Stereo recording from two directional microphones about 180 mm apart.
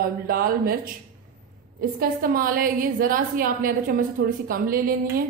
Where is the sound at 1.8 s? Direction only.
55° right (ahead or behind).